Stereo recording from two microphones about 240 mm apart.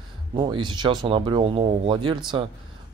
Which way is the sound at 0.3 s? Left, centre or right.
Centre.